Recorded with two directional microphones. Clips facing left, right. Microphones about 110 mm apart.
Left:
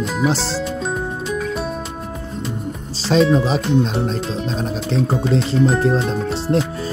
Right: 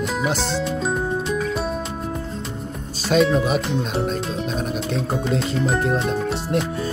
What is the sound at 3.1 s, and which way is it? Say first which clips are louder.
Music: left 2 dB; 30° left (ahead or behind).